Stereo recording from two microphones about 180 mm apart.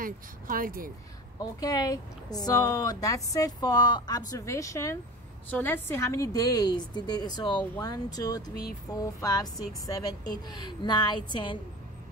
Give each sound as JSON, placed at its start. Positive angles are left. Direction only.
{"t": 0.0, "sound": "speech", "side_deg": -50}
{"t": 1.4, "sound": "speech", "side_deg": 20}